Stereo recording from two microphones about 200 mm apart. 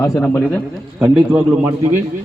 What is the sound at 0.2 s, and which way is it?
Speech, 10° left (ahead or behind).